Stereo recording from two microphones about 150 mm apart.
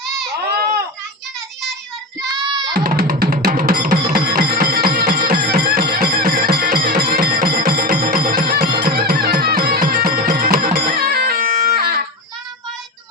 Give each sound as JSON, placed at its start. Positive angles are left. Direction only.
{"t": 0.4, "sound": "a sound", "side_deg": -90}
{"t": 2.7, "sound": "music", "side_deg": -85}
{"t": 10.9, "sound": "music", "side_deg": -90}